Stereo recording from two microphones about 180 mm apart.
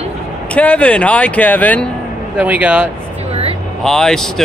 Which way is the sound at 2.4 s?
10° right (ahead or behind).